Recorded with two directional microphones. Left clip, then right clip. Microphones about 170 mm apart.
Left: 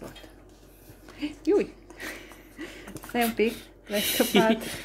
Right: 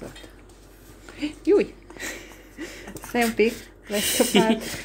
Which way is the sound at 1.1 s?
10° right (ahead or behind).